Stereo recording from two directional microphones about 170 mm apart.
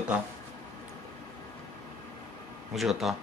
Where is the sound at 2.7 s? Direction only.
Centre (ahead or behind).